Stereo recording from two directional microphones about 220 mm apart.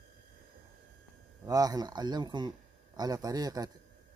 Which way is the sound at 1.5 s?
15° right (ahead or behind).